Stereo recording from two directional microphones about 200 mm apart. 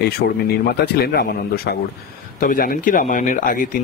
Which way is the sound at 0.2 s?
50° left (ahead or behind).